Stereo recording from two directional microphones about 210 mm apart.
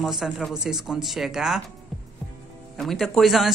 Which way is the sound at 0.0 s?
Centre (ahead or behind).